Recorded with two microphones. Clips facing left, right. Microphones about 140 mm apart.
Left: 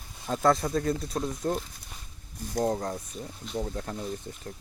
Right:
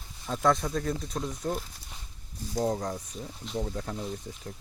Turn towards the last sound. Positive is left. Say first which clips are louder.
# even
turn(degrees=0)  # may be behind; listen again after turning